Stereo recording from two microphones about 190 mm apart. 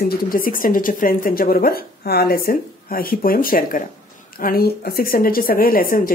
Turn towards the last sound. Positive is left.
turn(degrees=50)  # may be behind; listen again after turning